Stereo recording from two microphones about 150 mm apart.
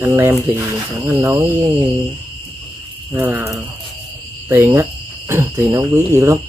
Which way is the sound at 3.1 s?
15° right (ahead or behind).